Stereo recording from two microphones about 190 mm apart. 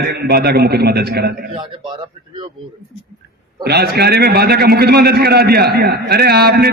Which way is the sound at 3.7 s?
60° right (ahead or behind).